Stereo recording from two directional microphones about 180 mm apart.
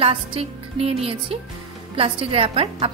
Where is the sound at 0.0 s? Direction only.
30° right (ahead or behind).